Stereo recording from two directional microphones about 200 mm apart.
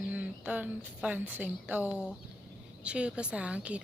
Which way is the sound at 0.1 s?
10° right (ahead or behind).